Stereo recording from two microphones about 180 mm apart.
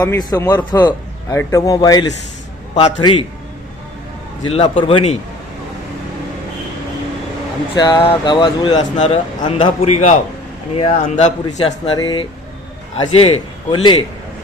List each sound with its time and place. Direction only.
0.0 s speech: 20° left (ahead or behind)
4.5 s a man's voice: 30° left (ahead or behind)
7.8 s a man's voice: 25° left (ahead or behind)
11.4 s speech: 25° left (ahead or behind)